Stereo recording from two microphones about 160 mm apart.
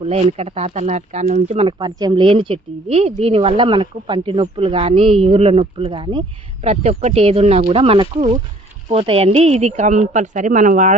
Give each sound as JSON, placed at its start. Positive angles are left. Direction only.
{"t": 0.0, "sound": "speech", "side_deg": -40}
{"t": 6.7, "sound": "a woman's voice", "side_deg": -40}